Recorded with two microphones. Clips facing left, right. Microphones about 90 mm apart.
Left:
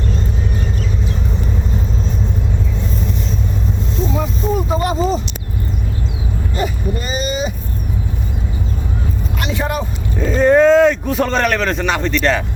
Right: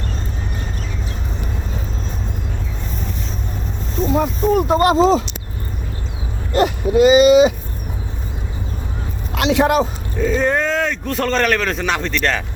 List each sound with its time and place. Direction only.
4.1 s a sound: 60° right (ahead or behind); by 5.2 s 90° right
6.5 s speech: 80° right
9.3 s speech: 90° right
10.2 s speech: centre (ahead or behind)